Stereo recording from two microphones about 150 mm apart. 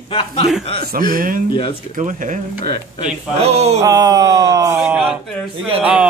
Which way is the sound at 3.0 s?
45° right (ahead or behind).